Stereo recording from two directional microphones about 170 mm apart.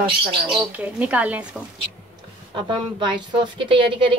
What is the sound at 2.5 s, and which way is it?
A woman's voice, 30° right (ahead or behind).